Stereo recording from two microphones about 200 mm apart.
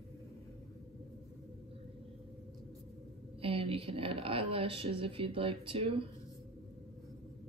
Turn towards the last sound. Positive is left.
turn(degrees=-30)  # may be behind; listen again after turning